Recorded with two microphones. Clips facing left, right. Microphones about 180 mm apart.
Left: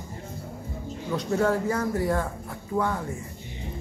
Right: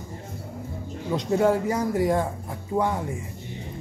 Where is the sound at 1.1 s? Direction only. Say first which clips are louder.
Right 3 dB; 15° right (ahead or behind).